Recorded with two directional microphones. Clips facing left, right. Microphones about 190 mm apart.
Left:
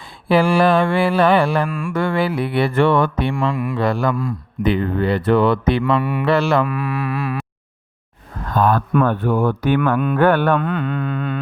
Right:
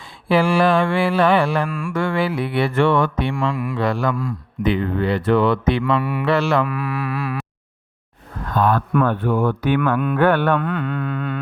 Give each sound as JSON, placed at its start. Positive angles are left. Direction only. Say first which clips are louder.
{"t": 0.3, "sound": "mantra", "louder": "left 2 dB", "side_deg": 35}
{"t": 3.5, "sound": "speech", "louder": "left 2 dB", "side_deg": 20}
{"t": 3.8, "sound": "mantra", "louder": "left 2 dB", "side_deg": 35}
{"t": 6.0, "sound": "speech", "louder": "left 2 dB", "side_deg": 25}
{"t": 6.2, "sound": "speech", "louder": "left 2 dB", "side_deg": 35}
{"t": 8.5, "sound": "speech", "louder": "left 1 dB", "side_deg": 45}
{"t": 9.0, "sound": "mantra", "louder": "left 1 dB", "side_deg": 40}
{"t": 10.6, "sound": "speech", "louder": "left 2 dB", "side_deg": 25}